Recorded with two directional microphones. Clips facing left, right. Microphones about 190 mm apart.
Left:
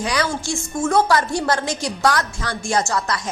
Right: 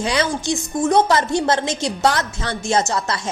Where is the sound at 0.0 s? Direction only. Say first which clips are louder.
Right 2 dB; 25° right (ahead or behind).